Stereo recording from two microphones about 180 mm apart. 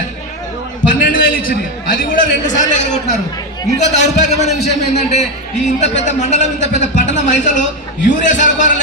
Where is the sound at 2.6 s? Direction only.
40° left (ahead or behind).